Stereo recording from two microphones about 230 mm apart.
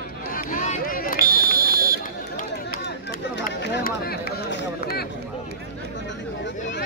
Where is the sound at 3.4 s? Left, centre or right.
Left.